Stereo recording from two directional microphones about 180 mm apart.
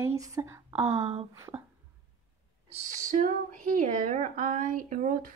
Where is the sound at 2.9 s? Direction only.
45° right (ahead or behind).